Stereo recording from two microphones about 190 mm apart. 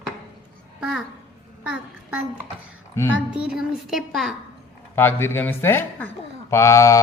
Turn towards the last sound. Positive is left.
turn(degrees=15)  # may be behind; listen again after turning